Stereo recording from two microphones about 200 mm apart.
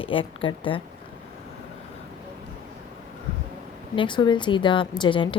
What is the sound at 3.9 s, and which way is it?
Speech, 25° left (ahead or behind).